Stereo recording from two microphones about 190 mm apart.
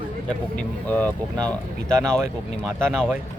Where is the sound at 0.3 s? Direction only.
5° left (ahead or behind).